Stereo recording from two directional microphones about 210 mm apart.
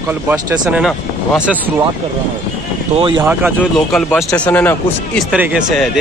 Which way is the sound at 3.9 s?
Centre (ahead or behind).